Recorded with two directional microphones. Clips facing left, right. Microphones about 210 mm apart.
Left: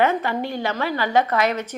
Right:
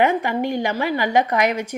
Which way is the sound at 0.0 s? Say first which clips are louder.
Right 2 dB; 15° right (ahead or behind).